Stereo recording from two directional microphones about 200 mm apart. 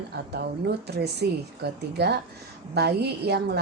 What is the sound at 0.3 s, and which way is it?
A woman's voice, 55° right (ahead or behind).